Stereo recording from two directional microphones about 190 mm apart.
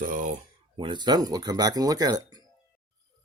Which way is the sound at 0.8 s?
25° right (ahead or behind).